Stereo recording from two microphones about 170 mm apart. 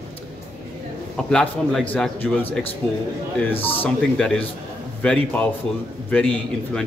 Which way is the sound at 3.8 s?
10° left (ahead or behind).